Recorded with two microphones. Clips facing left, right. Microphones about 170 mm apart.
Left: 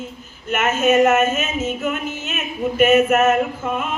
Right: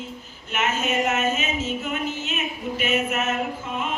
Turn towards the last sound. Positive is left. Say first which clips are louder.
# left 7 dB
turn(degrees=50)  # may be behind; listen again after turning